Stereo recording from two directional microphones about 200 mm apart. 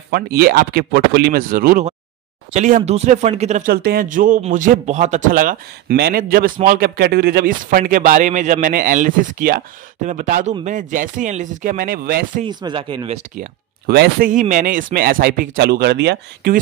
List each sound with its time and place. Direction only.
0.1 s a man's voice: 50° right (ahead or behind); by 3.7 s 35° right (ahead or behind)
3.7 s a man's voice: 50° right (ahead or behind)
12.4 s speech: 25° right (ahead or behind)
13.4 s a man's voice: 45° right (ahead or behind)